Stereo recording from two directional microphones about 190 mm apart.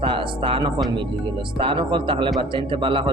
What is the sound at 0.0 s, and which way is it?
Music, 25° right (ahead or behind).